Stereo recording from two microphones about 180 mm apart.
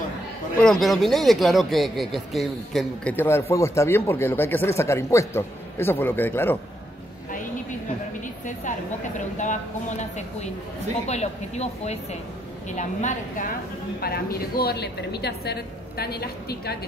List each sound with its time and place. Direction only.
0.6 s speech: centre (ahead or behind)
8.5 s speech: 45° left (ahead or behind)
13.9 s a woman's voice: 60° left (ahead or behind)